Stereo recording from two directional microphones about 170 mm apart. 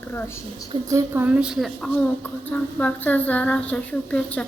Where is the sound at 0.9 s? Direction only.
15° right (ahead or behind).